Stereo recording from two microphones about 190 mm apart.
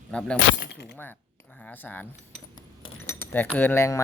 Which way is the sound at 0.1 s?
5° left (ahead or behind).